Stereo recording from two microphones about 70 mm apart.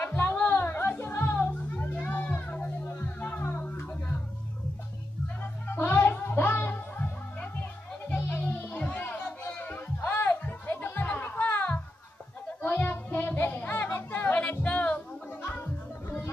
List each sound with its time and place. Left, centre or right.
0.0 s music: left
1.5 s music: left
2.0 s a sound: left
2.3 s children playing: left
2.9 s music: left
5.4 s music: left
8.1 s music: left
8.7 s children playing: left
9.6 s music: left
12.6 s child singing: left
14.1 s music: left
14.6 s a sound: left
15.4 s music: left